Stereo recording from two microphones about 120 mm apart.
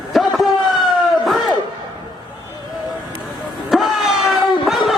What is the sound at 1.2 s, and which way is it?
Crowd, centre (ahead or behind).